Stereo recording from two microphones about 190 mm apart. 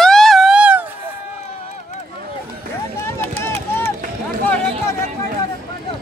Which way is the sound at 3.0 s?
10° left (ahead or behind).